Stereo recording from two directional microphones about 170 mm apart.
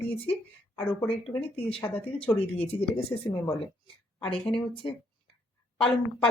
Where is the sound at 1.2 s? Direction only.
35° left (ahead or behind).